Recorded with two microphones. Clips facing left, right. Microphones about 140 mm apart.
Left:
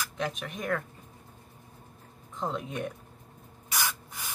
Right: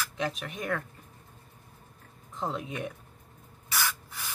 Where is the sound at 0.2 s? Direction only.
Centre (ahead or behind).